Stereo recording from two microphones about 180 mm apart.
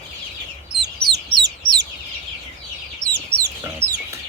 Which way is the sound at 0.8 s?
70° right (ahead or behind).